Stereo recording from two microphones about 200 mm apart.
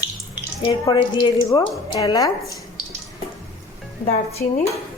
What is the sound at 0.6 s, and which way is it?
Speech, 20° left (ahead or behind).